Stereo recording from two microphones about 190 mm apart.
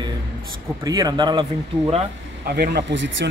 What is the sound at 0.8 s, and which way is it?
Speech, 20° right (ahead or behind).